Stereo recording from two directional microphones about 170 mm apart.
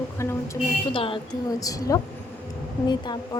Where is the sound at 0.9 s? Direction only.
30° left (ahead or behind).